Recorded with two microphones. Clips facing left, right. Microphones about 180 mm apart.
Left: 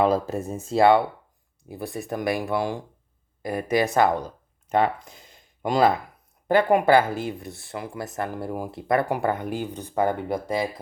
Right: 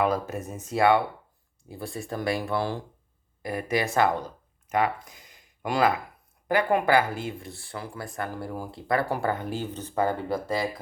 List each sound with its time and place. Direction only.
0.0 s speech: 30° left (ahead or behind)